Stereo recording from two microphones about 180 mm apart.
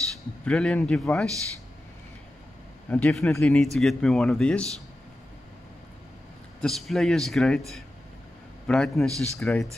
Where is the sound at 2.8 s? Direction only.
5° left (ahead or behind).